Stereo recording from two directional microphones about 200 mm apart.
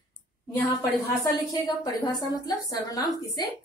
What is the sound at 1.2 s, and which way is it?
A woman's voice, 15° left (ahead or behind).